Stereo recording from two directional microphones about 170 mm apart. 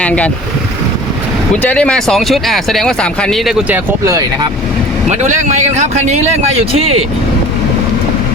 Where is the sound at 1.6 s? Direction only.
5° left (ahead or behind).